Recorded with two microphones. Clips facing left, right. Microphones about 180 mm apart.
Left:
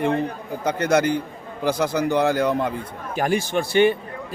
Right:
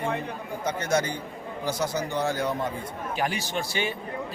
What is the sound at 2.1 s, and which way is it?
Speech, 65° left (ahead or behind).